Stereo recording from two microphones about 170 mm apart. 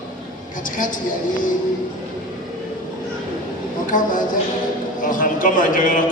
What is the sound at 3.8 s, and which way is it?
A man's voice, 50° left (ahead or behind).